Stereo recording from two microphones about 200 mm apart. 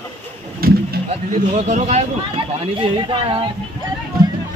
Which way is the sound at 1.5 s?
35° right (ahead or behind).